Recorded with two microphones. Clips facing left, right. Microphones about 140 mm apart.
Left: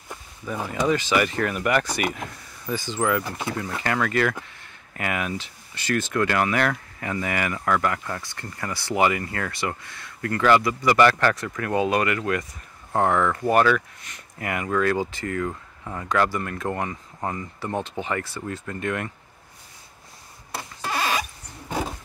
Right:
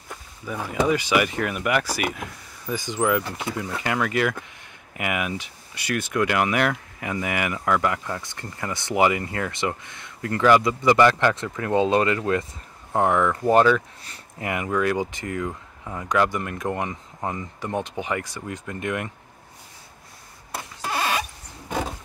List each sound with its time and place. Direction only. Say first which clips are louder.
0.8 s speech: left 1 dB; 10° right (ahead or behind)
12.9 s speech: right 1 dB; 15° right (ahead or behind)
20.8 s rodents: even; 10° right (ahead or behind)